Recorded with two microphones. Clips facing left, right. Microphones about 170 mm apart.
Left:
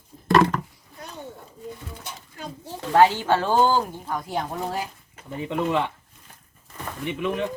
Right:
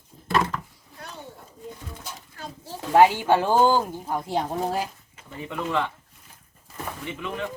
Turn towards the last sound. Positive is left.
turn(degrees=20)  # may be behind; listen again after turning